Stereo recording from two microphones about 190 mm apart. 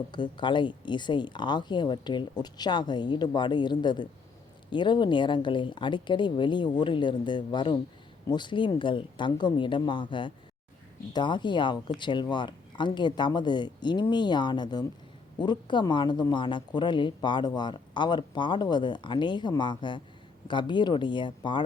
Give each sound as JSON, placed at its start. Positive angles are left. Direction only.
{"t": 0.1, "sound": "speech", "side_deg": 25}